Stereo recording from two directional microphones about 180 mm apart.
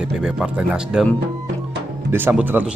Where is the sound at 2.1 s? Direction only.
10° right (ahead or behind).